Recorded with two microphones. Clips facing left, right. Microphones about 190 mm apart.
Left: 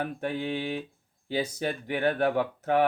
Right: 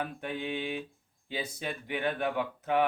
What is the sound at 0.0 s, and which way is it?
Speech, 35° left (ahead or behind).